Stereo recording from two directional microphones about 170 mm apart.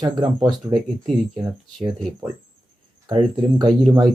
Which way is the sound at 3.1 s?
30° right (ahead or behind).